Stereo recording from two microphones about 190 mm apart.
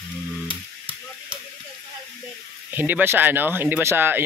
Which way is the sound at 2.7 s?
10° right (ahead or behind).